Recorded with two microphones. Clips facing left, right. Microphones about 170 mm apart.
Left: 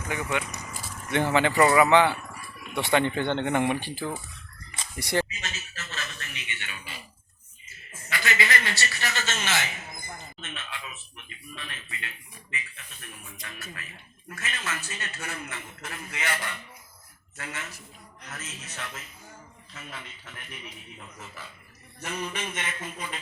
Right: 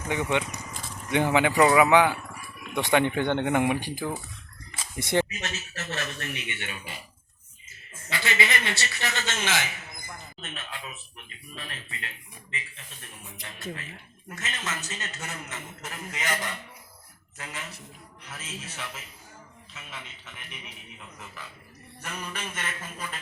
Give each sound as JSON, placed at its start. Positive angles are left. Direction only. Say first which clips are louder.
{"t": 0.1, "sound": "a man's voice", "louder": "right 3 dB", "side_deg": -20}
{"t": 5.7, "sound": "speech", "louder": "right 6 dB", "side_deg": -65}
{"t": 8.1, "sound": "a man's voice", "louder": "even", "side_deg": -25}
{"t": 10.4, "sound": "a sound", "louder": "right 1 dB", "side_deg": -40}
{"t": 11.5, "sound": "speech", "louder": "right 1 dB", "side_deg": -35}
{"t": 14.3, "sound": "a man's voice", "louder": "even", "side_deg": -20}
{"t": 19.7, "sound": "a man's voice", "louder": "left 2 dB", "side_deg": 0}
{"t": 22.0, "sound": "a sound", "louder": "left 4 dB", "side_deg": 10}